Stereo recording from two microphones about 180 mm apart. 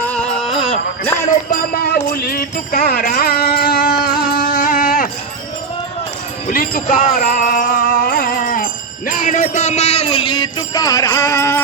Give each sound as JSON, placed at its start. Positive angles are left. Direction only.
{"t": 0.0, "sound": "music", "side_deg": 5}
{"t": 1.5, "sound": "music", "side_deg": 55}
{"t": 6.5, "sound": "music", "side_deg": 50}
{"t": 9.0, "sound": "jingle bell", "side_deg": 45}